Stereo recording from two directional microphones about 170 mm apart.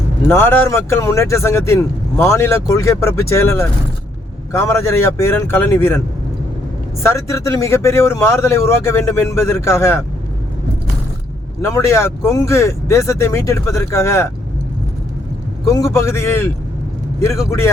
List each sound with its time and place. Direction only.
0.3 s speech: 15° left (ahead or behind)
7.0 s speech: 15° left (ahead or behind)
11.6 s speech: 15° left (ahead or behind)
15.6 s speech: 15° left (ahead or behind)